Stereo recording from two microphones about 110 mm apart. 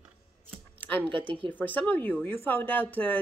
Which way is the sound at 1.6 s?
15° left (ahead or behind).